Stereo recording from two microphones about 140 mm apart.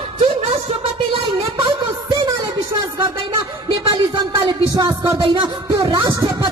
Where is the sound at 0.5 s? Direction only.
40° right (ahead or behind).